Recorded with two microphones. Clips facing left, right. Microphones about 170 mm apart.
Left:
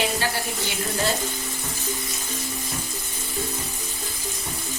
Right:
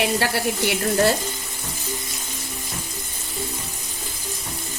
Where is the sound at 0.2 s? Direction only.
70° right (ahead or behind).